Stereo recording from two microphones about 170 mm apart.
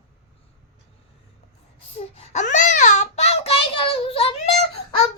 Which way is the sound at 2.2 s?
45° left (ahead or behind).